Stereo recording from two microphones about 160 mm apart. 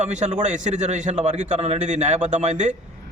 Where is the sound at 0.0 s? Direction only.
45° right (ahead or behind).